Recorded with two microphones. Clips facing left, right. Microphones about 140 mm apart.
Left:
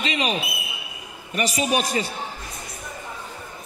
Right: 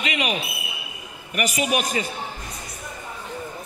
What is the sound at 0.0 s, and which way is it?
A man's voice, 30° left (ahead or behind).